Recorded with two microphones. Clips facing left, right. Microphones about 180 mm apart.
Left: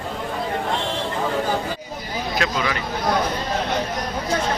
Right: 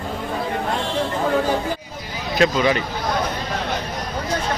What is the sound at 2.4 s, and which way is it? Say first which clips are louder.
Speech: right 9 dB; 25° right (ahead or behind).